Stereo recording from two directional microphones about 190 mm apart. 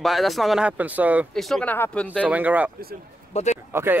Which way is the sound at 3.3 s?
40° left (ahead or behind).